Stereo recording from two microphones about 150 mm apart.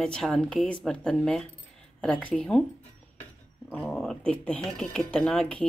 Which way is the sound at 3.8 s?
5° left (ahead or behind).